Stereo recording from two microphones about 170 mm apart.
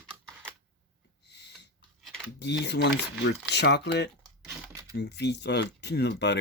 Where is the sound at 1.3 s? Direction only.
80° left.